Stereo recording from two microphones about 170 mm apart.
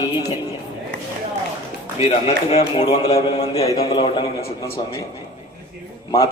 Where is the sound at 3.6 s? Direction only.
20° left (ahead or behind).